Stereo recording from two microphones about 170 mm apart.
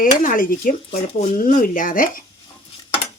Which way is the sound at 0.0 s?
50° left (ahead or behind).